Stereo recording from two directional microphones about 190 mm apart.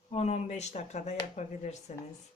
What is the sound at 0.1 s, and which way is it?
Speech, 35° left (ahead or behind).